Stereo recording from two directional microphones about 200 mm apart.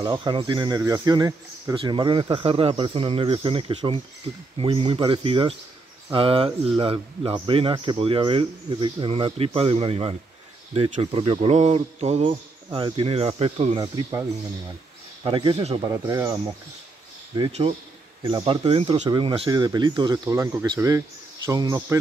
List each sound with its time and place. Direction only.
0.0 s a man's voice: 20° right (ahead or behind)
13.7 s a man's voice: 20° right (ahead or behind)
15.2 s a man's voice: 25° right (ahead or behind)
17.5 s a man's voice: 30° right (ahead or behind); by 22.0 s 15° right (ahead or behind)